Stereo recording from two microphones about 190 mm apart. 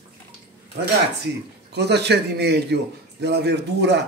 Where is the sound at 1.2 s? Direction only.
60° right (ahead or behind).